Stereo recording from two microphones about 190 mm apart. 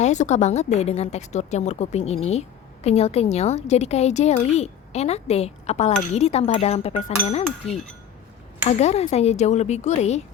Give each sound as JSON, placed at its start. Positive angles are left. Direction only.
{"t": 0.0, "sound": "a woman's voice", "side_deg": 40}